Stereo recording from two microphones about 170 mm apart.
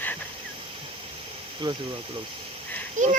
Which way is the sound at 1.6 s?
25° right (ahead or behind).